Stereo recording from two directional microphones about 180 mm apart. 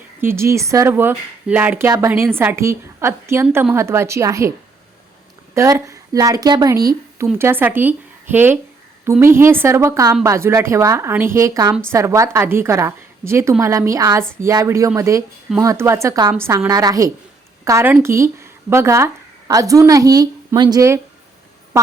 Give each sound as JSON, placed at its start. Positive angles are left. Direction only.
{"t": 0.2, "sound": "speech", "side_deg": -15}
{"t": 5.5, "sound": "a woman's voice", "side_deg": -15}